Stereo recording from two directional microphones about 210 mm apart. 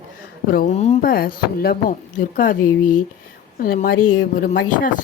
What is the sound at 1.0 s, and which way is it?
A woman's voice, 45° left (ahead or behind).